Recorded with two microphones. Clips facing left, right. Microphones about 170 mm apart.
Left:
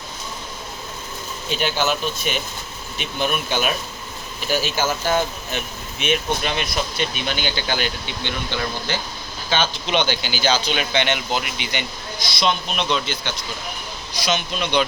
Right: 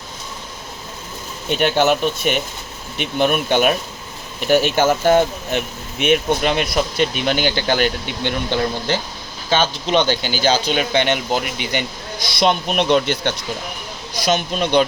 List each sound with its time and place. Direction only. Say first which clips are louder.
1.5 s speech: right 6 dB; 60° right (ahead or behind); by 11.9 s 45° right (ahead or behind)
12.4 s speech: right 5 dB; 55° right (ahead or behind)
14.3 s speech: right 5 dB; 45° right (ahead or behind)